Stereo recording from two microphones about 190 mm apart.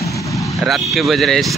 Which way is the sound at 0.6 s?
Centre (ahead or behind).